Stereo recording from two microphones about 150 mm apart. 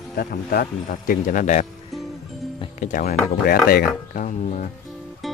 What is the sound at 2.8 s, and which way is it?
Speech, 60° left (ahead or behind).